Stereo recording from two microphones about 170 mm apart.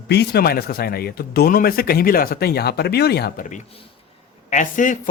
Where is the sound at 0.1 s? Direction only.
70° left (ahead or behind).